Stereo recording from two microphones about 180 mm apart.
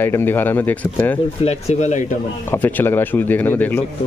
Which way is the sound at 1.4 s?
35° left (ahead or behind).